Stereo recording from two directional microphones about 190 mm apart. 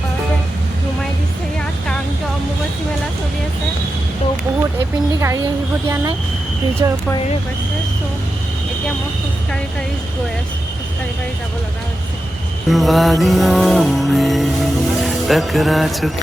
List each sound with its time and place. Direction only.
6.8 s speech: 20° right (ahead or behind)
12.6 s music: centre (ahead or behind)